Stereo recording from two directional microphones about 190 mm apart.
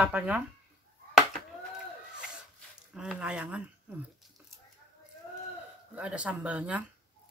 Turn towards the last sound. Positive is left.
turn(degrees=-5)  # may be behind; listen again after turning